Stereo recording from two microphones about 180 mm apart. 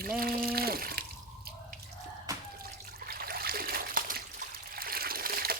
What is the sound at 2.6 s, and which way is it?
Water, 55° right (ahead or behind).